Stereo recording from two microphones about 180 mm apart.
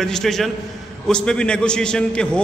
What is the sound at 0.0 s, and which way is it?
A man's voice, centre (ahead or behind).